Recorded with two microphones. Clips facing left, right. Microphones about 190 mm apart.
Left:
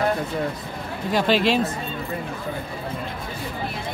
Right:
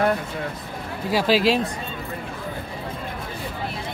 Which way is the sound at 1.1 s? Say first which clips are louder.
Right 1 dB; 5° right (ahead or behind).